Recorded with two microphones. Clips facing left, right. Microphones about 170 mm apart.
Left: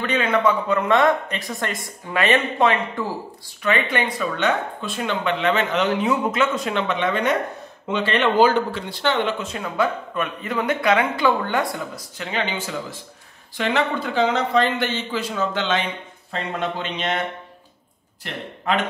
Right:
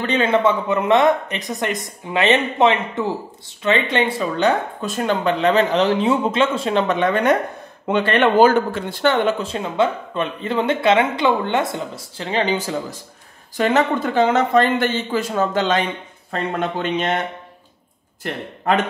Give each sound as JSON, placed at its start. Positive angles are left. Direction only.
{"t": 0.0, "sound": "speech", "side_deg": -30}
{"t": 6.9, "sound": "speech", "side_deg": -50}
{"t": 9.4, "sound": "speech", "side_deg": -30}